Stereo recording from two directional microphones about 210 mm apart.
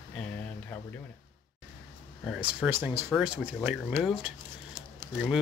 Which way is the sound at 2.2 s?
5° right (ahead or behind).